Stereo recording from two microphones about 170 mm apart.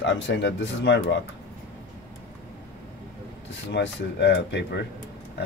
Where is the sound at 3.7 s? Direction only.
90° left.